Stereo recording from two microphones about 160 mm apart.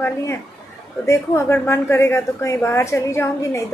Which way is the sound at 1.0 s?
20° left (ahead or behind).